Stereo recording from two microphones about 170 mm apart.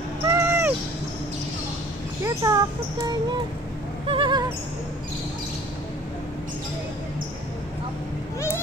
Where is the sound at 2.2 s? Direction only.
20° right (ahead or behind).